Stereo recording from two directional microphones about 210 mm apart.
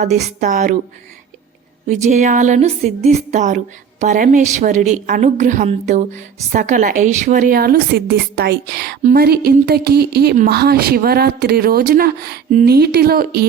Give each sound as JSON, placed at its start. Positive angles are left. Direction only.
{"t": 0.0, "sound": "speech", "side_deg": -35}
{"t": 1.9, "sound": "a woman's voice", "side_deg": -35}